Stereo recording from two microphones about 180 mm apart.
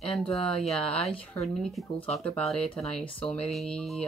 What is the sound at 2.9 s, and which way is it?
Speech, 30° left (ahead or behind).